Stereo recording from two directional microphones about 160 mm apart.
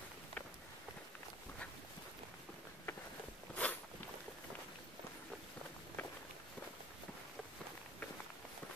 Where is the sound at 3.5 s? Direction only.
10° left (ahead or behind).